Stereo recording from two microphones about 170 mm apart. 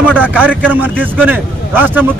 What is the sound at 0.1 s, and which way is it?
Speech, 10° right (ahead or behind).